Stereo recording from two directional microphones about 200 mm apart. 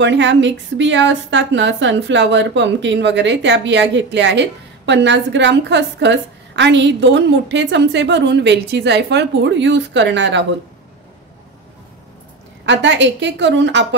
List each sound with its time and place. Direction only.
0.0 s a woman's voice: 65° right (ahead or behind)
12.6 s a woman's voice: 65° right (ahead or behind)